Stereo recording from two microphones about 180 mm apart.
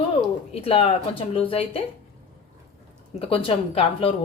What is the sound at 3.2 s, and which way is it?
Speech, 30° left (ahead or behind).